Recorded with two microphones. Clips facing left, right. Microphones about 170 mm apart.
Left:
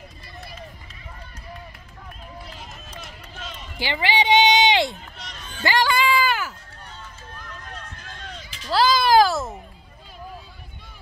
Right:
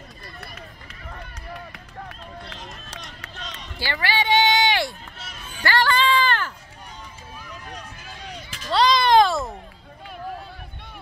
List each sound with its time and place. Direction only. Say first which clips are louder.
3.7 s run: left 2 dB; 20° left (ahead or behind)
5.2 s music: even; 5° right (ahead or behind)
5.6 s music: even; 15° left (ahead or behind)
7.3 s run: right 2 dB; 10° right (ahead or behind)
8.6 s a sound: even; 5° left (ahead or behind)